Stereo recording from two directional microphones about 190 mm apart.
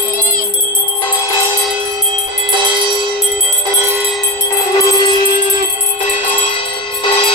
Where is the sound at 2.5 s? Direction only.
25° right (ahead or behind).